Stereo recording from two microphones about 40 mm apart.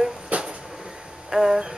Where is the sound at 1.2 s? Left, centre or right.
Centre.